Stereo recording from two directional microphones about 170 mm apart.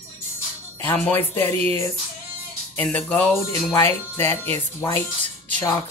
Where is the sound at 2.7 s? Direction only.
10° left (ahead or behind).